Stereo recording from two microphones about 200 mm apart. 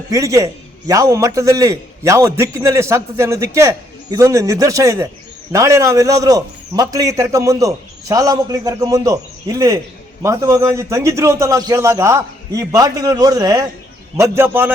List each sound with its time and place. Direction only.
0.1 s a man's voice: 15° right (ahead or behind)